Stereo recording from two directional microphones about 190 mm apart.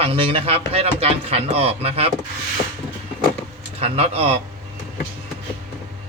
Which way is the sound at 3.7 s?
30° right (ahead or behind).